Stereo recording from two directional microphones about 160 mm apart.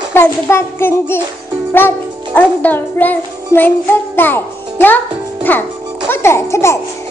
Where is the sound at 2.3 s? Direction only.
10° left (ahead or behind).